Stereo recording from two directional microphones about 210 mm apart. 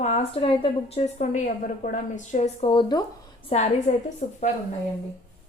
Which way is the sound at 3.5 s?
35° left (ahead or behind).